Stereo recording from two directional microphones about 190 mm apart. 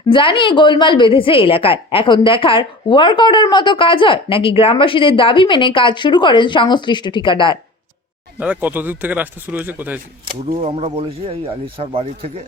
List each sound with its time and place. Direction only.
0.1 s a woman's voice: 25° left (ahead or behind)
8.4 s a man's voice: 10° right (ahead or behind)
10.6 s speech: 30° right (ahead or behind)